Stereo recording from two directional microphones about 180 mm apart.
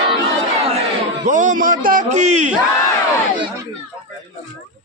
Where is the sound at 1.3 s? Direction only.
45° right (ahead or behind).